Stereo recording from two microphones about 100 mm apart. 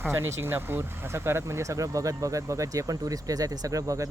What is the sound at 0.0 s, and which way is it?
Speech, 25° right (ahead or behind).